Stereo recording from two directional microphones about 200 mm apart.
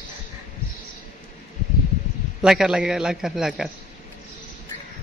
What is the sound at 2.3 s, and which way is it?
A man's voice, 5° right (ahead or behind).